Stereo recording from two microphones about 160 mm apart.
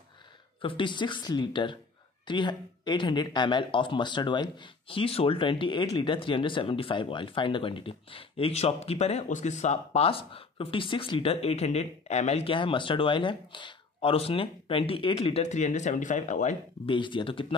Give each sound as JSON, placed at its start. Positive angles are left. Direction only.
{"t": 0.6, "sound": "speech", "side_deg": 30}
{"t": 16.8, "sound": "speech", "side_deg": 30}